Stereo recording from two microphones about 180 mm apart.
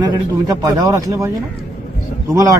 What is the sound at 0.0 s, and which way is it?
A man's voice, 20° right (ahead or behind).